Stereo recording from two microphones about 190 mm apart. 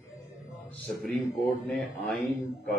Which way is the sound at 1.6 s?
Centre (ahead or behind).